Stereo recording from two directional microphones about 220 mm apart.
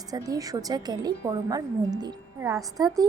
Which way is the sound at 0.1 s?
15° right (ahead or behind).